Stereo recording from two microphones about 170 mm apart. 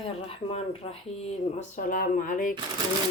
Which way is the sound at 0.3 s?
35° left (ahead or behind).